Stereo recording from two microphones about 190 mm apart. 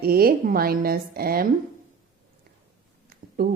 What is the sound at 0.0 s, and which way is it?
Speech, 50° right (ahead or behind).